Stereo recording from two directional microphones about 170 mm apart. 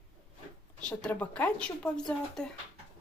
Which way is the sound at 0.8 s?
5° left (ahead or behind).